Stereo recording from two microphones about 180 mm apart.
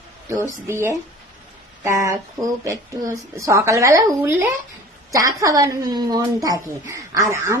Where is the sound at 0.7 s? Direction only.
15° right (ahead or behind).